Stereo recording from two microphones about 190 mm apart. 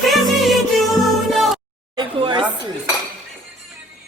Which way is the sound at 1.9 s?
25° right (ahead or behind).